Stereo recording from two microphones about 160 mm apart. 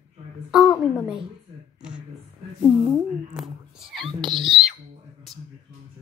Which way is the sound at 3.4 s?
5° right (ahead or behind).